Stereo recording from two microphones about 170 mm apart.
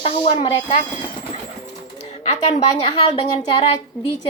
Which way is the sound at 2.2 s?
40° left (ahead or behind).